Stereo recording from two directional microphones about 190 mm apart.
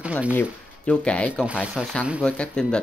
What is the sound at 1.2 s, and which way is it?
Speech, 5° right (ahead or behind).